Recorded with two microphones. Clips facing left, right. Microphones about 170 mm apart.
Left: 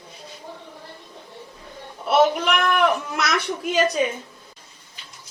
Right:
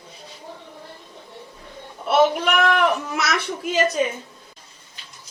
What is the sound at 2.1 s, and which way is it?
A child's voice, centre (ahead or behind).